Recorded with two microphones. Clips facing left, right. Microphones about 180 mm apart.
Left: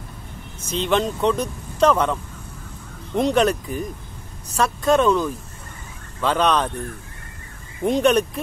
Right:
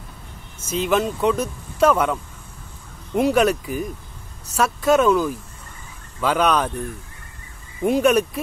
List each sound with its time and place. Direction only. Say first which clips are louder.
0.7 s speech: right 1 dB; 5° right (ahead or behind)
3.2 s speech: right 1 dB; 5° right (ahead or behind)
7.8 s speech: right 1 dB; 5° right (ahead or behind)